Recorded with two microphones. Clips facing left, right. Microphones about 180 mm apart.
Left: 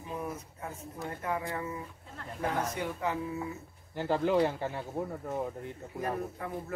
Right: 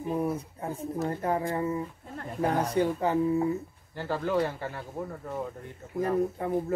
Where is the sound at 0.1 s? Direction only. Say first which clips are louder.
Right 8 dB; 30° right (ahead or behind).